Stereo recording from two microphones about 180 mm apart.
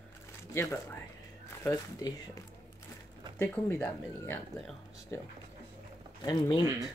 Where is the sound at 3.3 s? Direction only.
15° left (ahead or behind).